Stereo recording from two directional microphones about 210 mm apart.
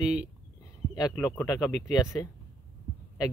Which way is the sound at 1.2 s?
10° left (ahead or behind).